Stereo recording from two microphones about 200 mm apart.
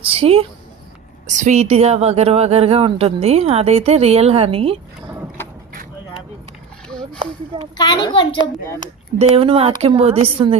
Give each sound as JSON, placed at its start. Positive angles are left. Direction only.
{"t": 0.0, "sound": "a woman's voice", "side_deg": -30}
{"t": 7.2, "sound": "a woman's voice", "side_deg": -25}
{"t": 7.8, "sound": "a child's voice", "side_deg": 20}
{"t": 9.1, "sound": "a woman's voice", "side_deg": -30}